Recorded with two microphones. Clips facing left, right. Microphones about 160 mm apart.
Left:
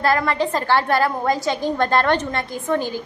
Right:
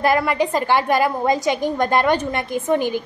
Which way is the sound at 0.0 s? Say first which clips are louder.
Right 1 dB; 15° right (ahead or behind).